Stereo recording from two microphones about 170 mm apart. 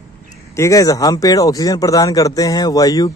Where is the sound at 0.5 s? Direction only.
20° left (ahead or behind).